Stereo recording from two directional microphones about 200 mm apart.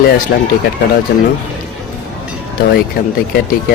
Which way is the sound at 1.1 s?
55° left (ahead or behind).